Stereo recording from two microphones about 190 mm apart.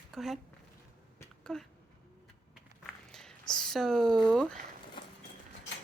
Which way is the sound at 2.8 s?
Centre (ahead or behind).